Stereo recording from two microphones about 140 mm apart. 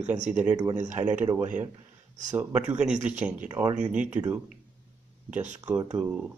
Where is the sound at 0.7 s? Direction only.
60° right (ahead or behind).